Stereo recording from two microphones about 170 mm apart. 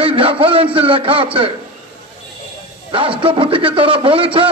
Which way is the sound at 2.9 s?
30° right (ahead or behind).